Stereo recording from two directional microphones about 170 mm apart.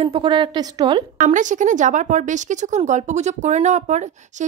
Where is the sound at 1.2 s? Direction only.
45° right (ahead or behind).